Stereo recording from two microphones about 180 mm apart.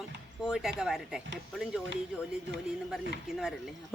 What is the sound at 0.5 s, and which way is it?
Speech, 5° right (ahead or behind).